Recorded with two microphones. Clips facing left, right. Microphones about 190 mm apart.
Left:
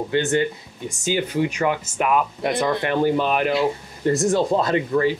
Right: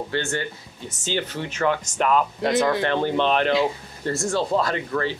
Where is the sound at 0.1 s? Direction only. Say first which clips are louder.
Left 9 dB; 20° left (ahead or behind).